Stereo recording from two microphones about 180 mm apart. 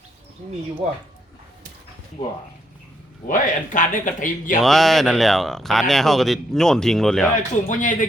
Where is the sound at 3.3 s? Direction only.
45° left (ahead or behind).